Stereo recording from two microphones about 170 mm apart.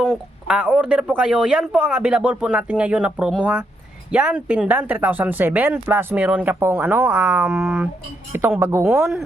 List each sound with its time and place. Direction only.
0.0 s speech: 5° right (ahead or behind)
7.5 s a sound: 5° right (ahead or behind)
8.3 s speech: 15° right (ahead or behind)